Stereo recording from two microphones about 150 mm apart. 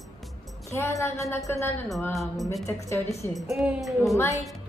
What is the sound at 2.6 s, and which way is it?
Music, 20° left (ahead or behind).